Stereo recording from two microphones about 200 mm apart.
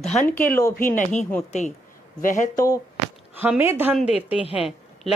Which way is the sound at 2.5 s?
15° left (ahead or behind).